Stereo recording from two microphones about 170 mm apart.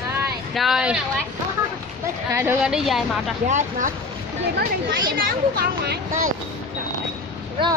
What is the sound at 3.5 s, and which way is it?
Speech, 45° right (ahead or behind).